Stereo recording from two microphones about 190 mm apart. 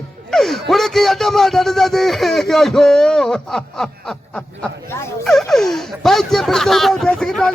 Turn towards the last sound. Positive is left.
turn(degrees=5)  # may be behind; listen again after turning